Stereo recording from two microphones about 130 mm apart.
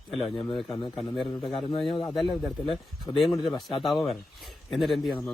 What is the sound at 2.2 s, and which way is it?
Speech, centre (ahead or behind).